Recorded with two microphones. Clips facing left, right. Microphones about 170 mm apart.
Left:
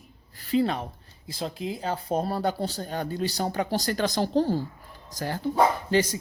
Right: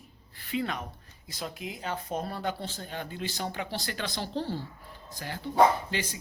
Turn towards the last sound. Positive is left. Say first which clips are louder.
# left 7 dB
turn(degrees=40)  # may be behind; listen again after turning